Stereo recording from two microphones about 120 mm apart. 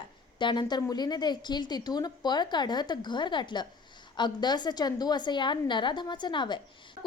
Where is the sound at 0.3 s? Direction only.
40° left (ahead or behind).